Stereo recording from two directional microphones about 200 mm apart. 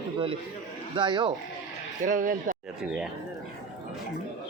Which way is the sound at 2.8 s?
5° right (ahead or behind).